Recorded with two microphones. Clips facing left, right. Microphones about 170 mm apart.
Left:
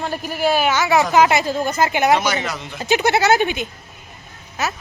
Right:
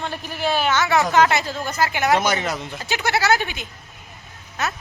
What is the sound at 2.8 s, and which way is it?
Speech, 20° left (ahead or behind).